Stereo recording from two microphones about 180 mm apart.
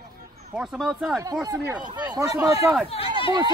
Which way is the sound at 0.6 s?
5° right (ahead or behind).